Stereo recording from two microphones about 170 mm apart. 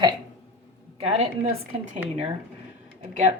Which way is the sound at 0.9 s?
35° right (ahead or behind).